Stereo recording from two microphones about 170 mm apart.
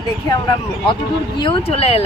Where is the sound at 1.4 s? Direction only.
30° left (ahead or behind).